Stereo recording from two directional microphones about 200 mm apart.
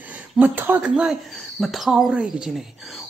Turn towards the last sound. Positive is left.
turn(degrees=0)  # may be behind; listen again after turning